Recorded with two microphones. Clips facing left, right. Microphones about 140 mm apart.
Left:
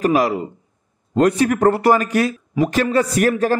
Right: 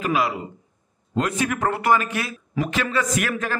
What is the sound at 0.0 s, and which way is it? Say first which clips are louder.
A man's voice: left 6 dB; 40° left (ahead or behind).